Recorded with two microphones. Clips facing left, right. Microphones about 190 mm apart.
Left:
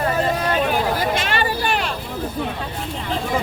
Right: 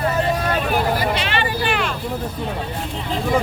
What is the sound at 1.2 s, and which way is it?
Vehicle, 45° left (ahead or behind).